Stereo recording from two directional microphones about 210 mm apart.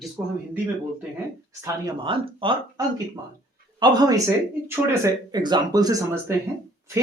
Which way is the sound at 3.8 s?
20° right (ahead or behind).